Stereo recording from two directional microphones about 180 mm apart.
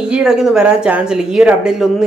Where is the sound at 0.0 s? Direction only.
5° right (ahead or behind).